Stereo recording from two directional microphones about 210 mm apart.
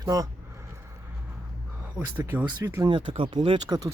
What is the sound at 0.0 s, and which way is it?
Speech, 15° right (ahead or behind).